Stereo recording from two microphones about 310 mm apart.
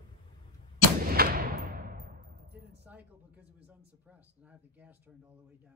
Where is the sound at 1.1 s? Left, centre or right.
Right.